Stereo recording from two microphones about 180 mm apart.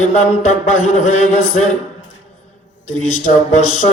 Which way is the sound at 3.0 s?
40° left (ahead or behind).